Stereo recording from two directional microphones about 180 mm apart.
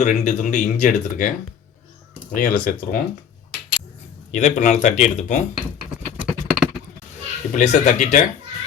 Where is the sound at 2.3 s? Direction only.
45° left (ahead or behind).